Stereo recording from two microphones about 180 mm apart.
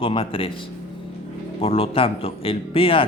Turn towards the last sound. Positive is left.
turn(degrees=30)  # may be behind; listen again after turning